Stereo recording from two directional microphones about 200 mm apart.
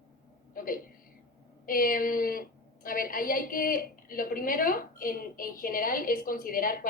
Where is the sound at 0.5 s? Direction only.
45° left (ahead or behind).